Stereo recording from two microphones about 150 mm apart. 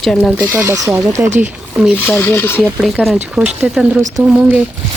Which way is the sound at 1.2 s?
50° right (ahead or behind).